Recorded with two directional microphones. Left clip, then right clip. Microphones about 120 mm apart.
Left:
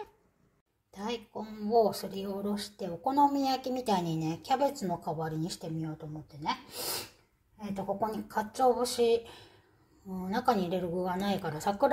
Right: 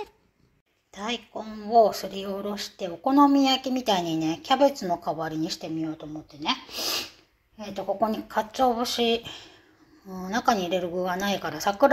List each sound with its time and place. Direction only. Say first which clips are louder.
0.9 s speech: right 5 dB; centre (ahead or behind)
5.3 s speech: right 8 dB; 40° right (ahead or behind)
5.6 s speech: right 8 dB; 10° right (ahead or behind)